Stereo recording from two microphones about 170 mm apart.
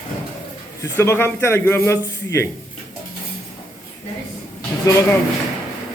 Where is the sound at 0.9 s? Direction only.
15° left (ahead or behind).